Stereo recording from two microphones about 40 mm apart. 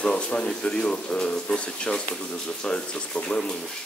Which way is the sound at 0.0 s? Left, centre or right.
Left.